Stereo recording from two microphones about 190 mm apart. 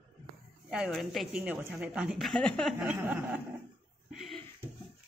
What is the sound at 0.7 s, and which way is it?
A woman's voice, 5° right (ahead or behind).